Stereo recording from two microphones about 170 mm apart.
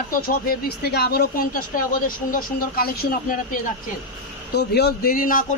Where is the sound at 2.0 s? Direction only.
55° left (ahead or behind).